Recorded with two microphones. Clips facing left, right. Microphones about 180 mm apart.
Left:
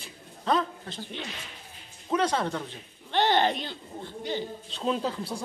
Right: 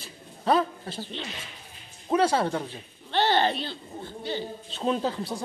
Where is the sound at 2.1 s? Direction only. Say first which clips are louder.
Right 3 dB; 10° right (ahead or behind).